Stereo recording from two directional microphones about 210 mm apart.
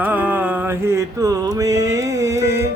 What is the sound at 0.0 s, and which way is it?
Music, 10° right (ahead or behind).